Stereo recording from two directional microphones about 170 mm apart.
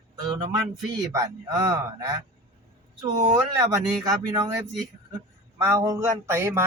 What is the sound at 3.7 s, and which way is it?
Speech, 20° right (ahead or behind).